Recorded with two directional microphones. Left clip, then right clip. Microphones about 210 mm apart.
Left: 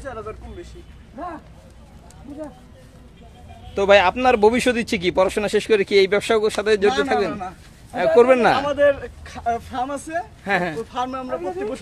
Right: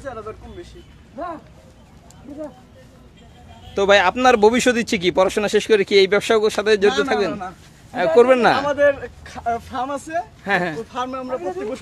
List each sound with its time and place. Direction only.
0.0 s speech: 5° right (ahead or behind)
3.7 s speech: 10° right (ahead or behind)